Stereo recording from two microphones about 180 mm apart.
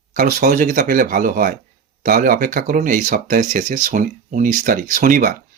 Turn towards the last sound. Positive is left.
turn(degrees=-50)  # may be behind; listen again after turning